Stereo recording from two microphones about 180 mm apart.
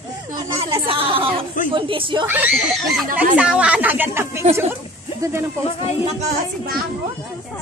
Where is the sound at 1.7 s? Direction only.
30° right (ahead or behind).